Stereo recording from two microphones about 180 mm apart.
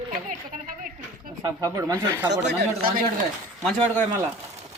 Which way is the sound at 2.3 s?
70° right (ahead or behind).